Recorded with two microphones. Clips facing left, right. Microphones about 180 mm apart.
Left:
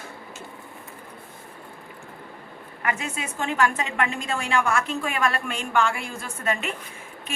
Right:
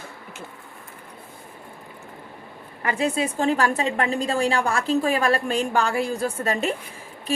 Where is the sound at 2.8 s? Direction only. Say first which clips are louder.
Right 6 dB; 35° right (ahead or behind).